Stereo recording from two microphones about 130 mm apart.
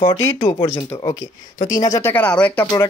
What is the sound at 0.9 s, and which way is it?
Speech, 30° left (ahead or behind).